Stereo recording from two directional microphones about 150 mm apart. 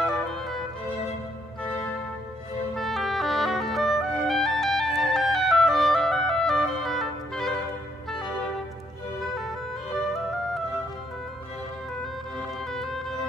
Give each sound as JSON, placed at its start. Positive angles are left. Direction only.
{"t": 0.0, "sound": "music", "side_deg": 5}
{"t": 2.7, "sound": "clarinet", "side_deg": 0}
{"t": 12.0, "sound": "music", "side_deg": 5}